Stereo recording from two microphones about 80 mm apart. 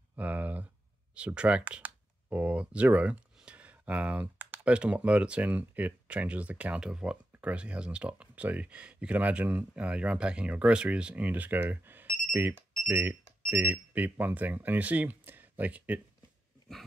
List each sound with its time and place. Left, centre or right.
0.1 s speech: centre